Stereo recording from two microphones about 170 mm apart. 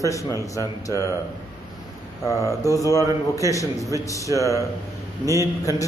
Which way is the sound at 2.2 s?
20° left (ahead or behind).